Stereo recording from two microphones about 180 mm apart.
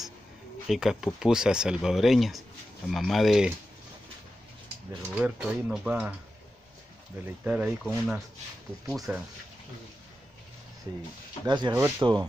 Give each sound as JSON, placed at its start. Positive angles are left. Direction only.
{"t": 0.7, "sound": "speech", "side_deg": 0}
{"t": 5.1, "sound": "speech", "side_deg": -5}
{"t": 7.4, "sound": "speech", "side_deg": -10}
{"t": 11.4, "sound": "speech", "side_deg": -25}